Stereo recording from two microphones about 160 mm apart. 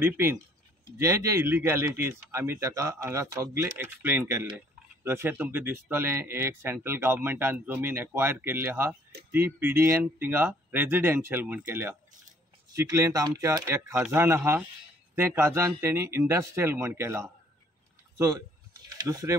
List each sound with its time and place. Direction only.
0.0 s speech: 15° right (ahead or behind)